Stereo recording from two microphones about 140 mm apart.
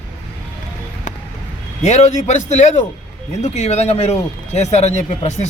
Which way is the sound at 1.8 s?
50° left (ahead or behind).